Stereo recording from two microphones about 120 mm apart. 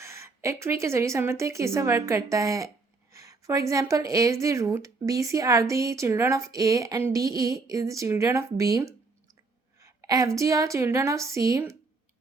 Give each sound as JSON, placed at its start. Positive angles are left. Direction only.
{"t": 0.0, "sound": "a woman's voice", "side_deg": -25}